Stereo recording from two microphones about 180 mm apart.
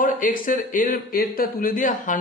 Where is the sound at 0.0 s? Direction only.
50° left (ahead or behind).